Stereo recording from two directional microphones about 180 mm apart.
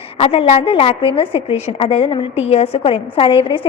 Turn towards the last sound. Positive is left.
turn(degrees=30)  # may be behind; listen again after turning